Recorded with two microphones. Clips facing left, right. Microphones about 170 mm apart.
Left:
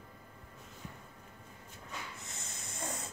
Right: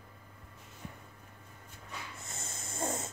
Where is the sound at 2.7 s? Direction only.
25° right (ahead or behind).